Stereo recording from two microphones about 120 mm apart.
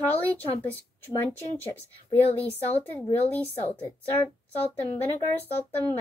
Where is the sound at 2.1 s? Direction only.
15° left (ahead or behind).